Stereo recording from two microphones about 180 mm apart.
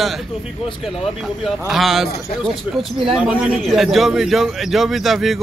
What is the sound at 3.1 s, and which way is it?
A man's voice, centre (ahead or behind).